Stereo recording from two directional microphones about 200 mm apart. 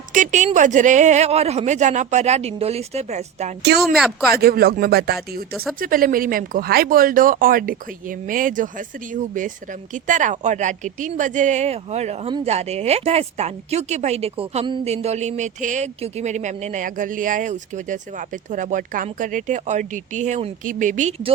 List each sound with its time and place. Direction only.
0.1 s speech: 40° right (ahead or behind)
3.8 s speech: centre (ahead or behind)
4.3 s speech: 50° right (ahead or behind)